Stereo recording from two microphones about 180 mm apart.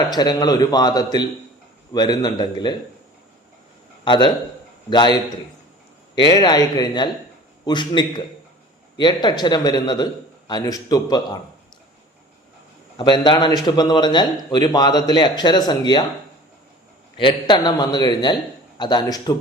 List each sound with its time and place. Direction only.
0.1 s a man's voice: 20° left (ahead or behind)
4.0 s a man's voice: 25° left (ahead or behind)
6.1 s a man's voice: 25° left (ahead or behind)
13.0 s a man's voice: 25° left (ahead or behind)
17.2 s a man's voice: 25° left (ahead or behind)